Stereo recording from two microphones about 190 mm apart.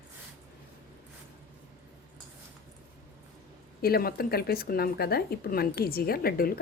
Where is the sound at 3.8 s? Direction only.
55° left (ahead or behind).